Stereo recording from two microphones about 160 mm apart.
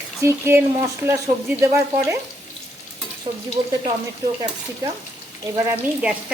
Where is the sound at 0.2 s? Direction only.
15° right (ahead or behind).